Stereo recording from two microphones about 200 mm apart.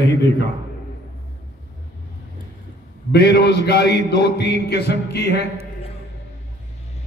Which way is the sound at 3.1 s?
55° left (ahead or behind).